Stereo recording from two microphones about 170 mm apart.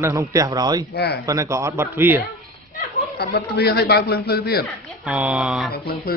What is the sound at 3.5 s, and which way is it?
A man's voice, 75° left (ahead or behind).